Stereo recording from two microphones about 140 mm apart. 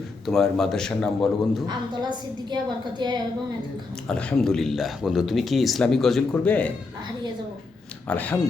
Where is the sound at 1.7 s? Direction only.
30° right (ahead or behind).